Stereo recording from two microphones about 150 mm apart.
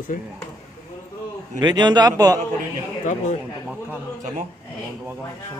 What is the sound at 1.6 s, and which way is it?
Speech, 30° right (ahead or behind).